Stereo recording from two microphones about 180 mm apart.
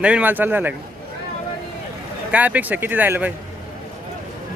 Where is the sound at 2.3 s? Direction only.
10° right (ahead or behind).